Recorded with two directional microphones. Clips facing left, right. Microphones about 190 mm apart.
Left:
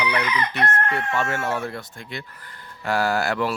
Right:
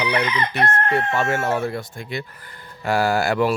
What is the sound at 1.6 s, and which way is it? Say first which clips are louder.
Speech: right 5 dB; 10° right (ahead or behind).